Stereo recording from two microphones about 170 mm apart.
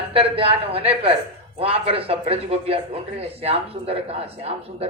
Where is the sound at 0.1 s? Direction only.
35° right (ahead or behind).